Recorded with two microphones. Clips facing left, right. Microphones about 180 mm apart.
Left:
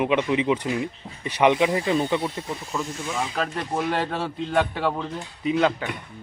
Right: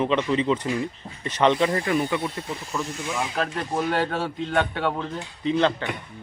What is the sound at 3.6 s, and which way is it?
A man's voice, centre (ahead or behind).